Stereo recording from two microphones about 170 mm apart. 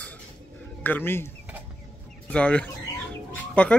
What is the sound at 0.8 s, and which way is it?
Speech, 10° left (ahead or behind).